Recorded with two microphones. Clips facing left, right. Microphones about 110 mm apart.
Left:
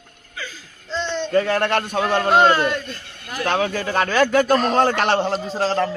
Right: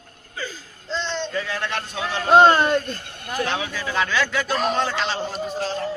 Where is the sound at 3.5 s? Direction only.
50° left (ahead or behind); by 5.3 s 65° left (ahead or behind).